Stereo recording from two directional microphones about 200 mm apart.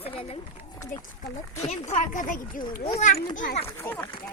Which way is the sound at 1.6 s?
35° left (ahead or behind).